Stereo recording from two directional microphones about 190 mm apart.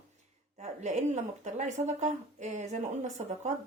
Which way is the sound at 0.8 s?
40° right (ahead or behind).